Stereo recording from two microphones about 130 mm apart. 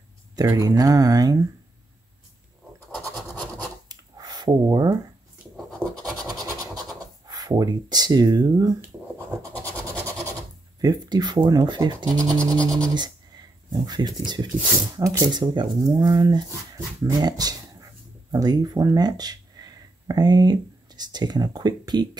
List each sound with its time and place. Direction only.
0.4 s speech: 30° right (ahead or behind)
3.9 s a sound: 30° right (ahead or behind)
5.8 s scratch: 20° right (ahead or behind)
7.2 s speech: 30° right (ahead or behind)
9.5 s scratch: 10° left (ahead or behind)
10.8 s speech: 30° right (ahead or behind)
12.5 s scratch: 10° left (ahead or behind)
12.9 s speech: 35° right (ahead or behind)